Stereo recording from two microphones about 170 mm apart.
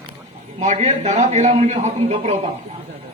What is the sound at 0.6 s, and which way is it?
A man's voice, 45° right (ahead or behind).